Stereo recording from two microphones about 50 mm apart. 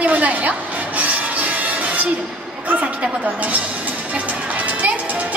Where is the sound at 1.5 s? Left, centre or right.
Right.